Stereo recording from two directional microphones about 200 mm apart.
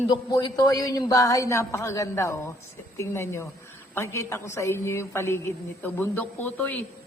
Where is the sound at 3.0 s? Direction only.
15° left (ahead or behind).